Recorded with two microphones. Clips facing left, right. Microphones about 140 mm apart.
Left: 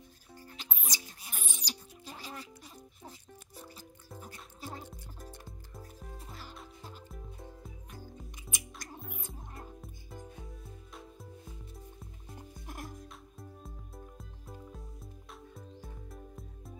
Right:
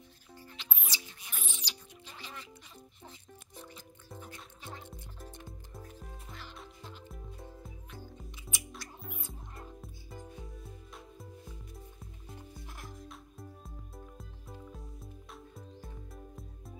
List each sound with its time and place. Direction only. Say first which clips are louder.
0.6 s music: left 2 dB; 40° left (ahead or behind)
4.2 s music: left 4 dB; 40° left (ahead or behind)
6.2 s music: left 1 dB; 40° left (ahead or behind)
6.5 s music: even; centre (ahead or behind)
8.5 s music: right 2 dB; 45° left (ahead or behind)
9.8 s music: even; centre (ahead or behind)
12.6 s music: left 5 dB; 45° left (ahead or behind)
13.1 s music: right 1 dB; centre (ahead or behind)